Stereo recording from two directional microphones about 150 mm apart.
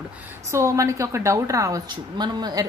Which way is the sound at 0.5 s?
20° right (ahead or behind).